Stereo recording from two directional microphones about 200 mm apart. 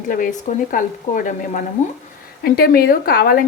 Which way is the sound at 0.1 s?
40° left (ahead or behind).